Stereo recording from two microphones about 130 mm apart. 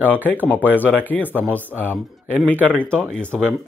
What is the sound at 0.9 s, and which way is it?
Speech, 10° left (ahead or behind).